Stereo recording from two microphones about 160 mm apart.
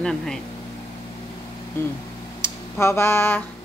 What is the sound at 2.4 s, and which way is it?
Speech, 15° left (ahead or behind).